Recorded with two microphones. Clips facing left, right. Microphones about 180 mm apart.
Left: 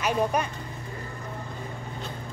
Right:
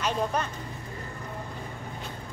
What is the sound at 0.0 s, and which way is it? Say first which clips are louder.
Speech: left 3 dB; 10° left (ahead or behind).